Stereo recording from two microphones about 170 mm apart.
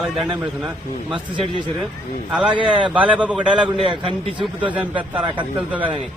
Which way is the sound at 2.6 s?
30° right (ahead or behind).